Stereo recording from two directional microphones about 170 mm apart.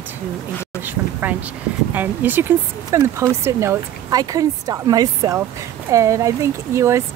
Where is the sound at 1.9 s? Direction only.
10° right (ahead or behind).